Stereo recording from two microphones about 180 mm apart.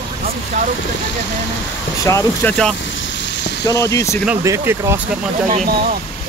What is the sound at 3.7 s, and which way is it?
Speech, 15° left (ahead or behind).